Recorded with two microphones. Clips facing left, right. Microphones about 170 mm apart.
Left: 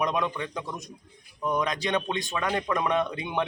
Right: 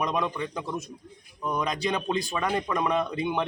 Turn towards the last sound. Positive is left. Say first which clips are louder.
# even
turn(degrees=0)  # may be behind; listen again after turning